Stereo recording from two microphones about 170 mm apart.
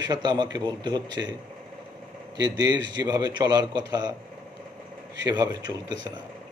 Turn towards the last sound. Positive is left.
turn(degrees=-25)  # may be behind; listen again after turning